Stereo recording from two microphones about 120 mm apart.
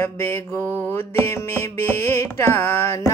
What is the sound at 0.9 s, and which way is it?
Carnatic music, 20° left (ahead or behind).